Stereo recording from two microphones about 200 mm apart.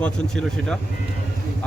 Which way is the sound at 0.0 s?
5° left (ahead or behind).